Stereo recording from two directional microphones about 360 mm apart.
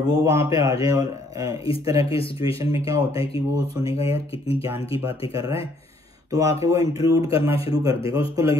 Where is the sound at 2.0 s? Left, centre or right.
Centre.